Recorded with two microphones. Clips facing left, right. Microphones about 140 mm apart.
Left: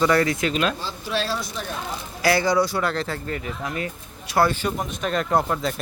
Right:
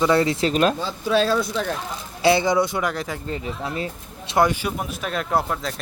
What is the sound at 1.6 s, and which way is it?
Speech, 90° right.